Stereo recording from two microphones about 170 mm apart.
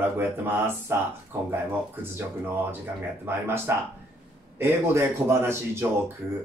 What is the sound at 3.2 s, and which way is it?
Speech, 15° right (ahead or behind).